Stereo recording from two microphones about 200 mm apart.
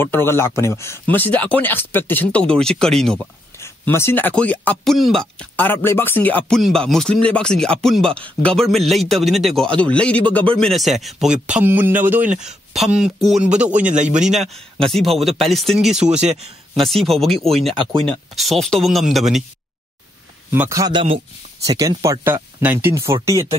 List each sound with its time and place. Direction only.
0.0 s speech: 10° left (ahead or behind)
3.5 s speech: 15° left (ahead or behind); by 12.3 s 10° right (ahead or behind)
12.3 s speech: 35° right (ahead or behind)
12.7 s speech: centre (ahead or behind)
20.5 s a man's voice: 15° right (ahead or behind)